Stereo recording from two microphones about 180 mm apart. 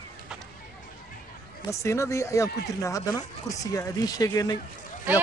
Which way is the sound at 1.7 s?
15° left (ahead or behind).